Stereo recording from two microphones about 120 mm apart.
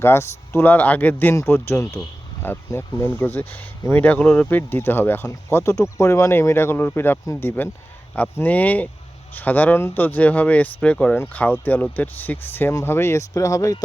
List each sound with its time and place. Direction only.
0.0 s speech: 20° left (ahead or behind)